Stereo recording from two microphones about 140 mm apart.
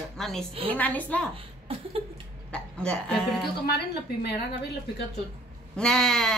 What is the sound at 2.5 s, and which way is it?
Speech, 5° left (ahead or behind).